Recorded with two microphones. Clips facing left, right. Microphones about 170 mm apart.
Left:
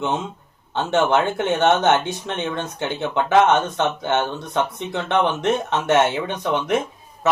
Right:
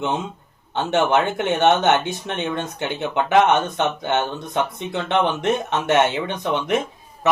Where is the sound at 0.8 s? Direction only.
15° right (ahead or behind).